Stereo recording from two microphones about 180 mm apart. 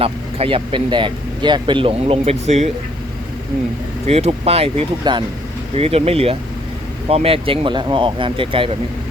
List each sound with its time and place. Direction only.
0.0 s speech: 30° right (ahead or behind)
4.0 s speech: 35° right (ahead or behind)